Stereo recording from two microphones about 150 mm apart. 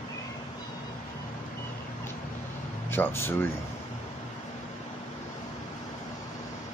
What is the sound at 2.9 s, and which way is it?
Speech, 15° left (ahead or behind).